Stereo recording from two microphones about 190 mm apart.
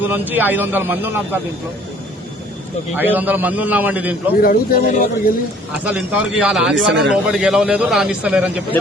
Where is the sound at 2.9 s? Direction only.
10° right (ahead or behind).